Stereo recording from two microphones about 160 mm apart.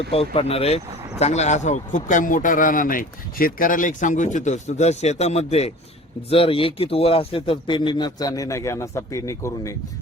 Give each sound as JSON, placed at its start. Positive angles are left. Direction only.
{"t": 0.1, "sound": "a man's voice", "side_deg": 35}